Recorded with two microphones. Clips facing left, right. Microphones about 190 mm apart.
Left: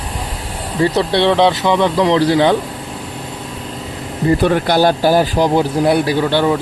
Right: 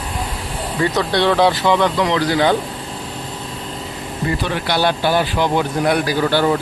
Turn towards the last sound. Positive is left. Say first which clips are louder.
# left 2 dB
turn(degrees=25)  # may be behind; listen again after turning